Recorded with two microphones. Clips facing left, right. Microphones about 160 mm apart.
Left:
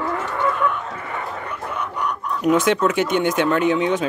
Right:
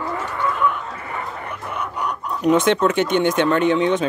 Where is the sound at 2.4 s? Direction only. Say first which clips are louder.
Right 1 dB; 5° left (ahead or behind).